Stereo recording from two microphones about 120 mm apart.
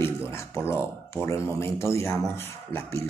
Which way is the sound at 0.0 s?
20° left (ahead or behind).